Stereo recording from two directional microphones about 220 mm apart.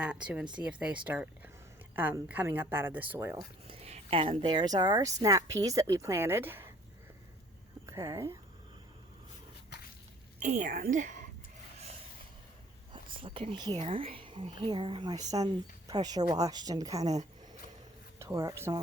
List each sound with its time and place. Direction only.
0.0 s a woman's voice: 5° right (ahead or behind)
3.7 s a woman's voice: 30° right (ahead or behind); by 6.7 s 10° right (ahead or behind)
7.9 s speech: 15° right (ahead or behind)
10.4 s a woman's voice: 35° right (ahead or behind)
13.1 s a woman's voice: 25° right (ahead or behind)
18.2 s speech: 15° right (ahead or behind)